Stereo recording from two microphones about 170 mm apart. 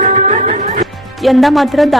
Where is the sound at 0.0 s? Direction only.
45° right (ahead or behind).